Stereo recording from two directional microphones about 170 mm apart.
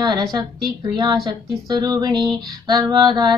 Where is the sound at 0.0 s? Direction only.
25° right (ahead or behind).